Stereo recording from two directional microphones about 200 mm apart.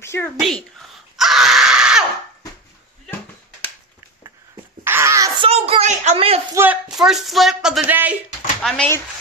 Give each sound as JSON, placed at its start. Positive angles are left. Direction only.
{"t": 0.0, "sound": "speech", "side_deg": 15}
{"t": 0.7, "sound": "screaming", "side_deg": 0}
{"t": 4.8, "sound": "a sound", "side_deg": -15}
{"t": 5.5, "sound": "a sound", "side_deg": -30}
{"t": 6.5, "sound": "speech", "side_deg": -10}
{"t": 8.6, "sound": "speech", "side_deg": 5}